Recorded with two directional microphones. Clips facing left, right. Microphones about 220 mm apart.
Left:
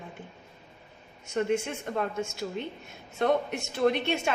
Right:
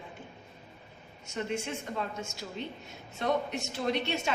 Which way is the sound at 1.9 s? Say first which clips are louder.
Left 6 dB; 55° left (ahead or behind).